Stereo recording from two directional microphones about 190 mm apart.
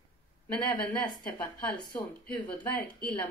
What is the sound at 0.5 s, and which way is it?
Speech, 5° left (ahead or behind).